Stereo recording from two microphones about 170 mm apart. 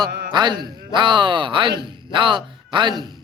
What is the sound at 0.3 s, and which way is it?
A man's voice, 25° right (ahead or behind).